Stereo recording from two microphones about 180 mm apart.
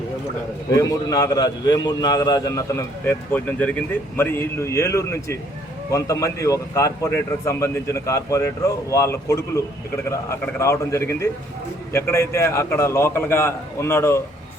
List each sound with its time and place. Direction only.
0.7 s a man's voice: 20° left (ahead or behind)